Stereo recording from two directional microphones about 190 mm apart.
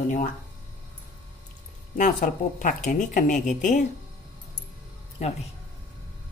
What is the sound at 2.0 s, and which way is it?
Speech, 40° left (ahead or behind).